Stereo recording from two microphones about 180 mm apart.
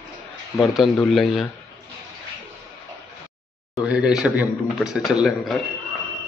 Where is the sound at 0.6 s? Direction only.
Centre (ahead or behind).